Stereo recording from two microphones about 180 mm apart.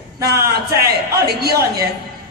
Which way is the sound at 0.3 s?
60° right (ahead or behind).